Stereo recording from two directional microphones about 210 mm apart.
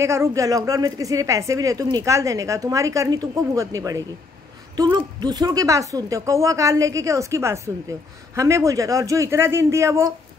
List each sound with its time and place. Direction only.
0.0 s speech: 15° right (ahead or behind)